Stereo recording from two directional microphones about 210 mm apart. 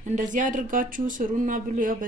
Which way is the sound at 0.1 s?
35° right (ahead or behind).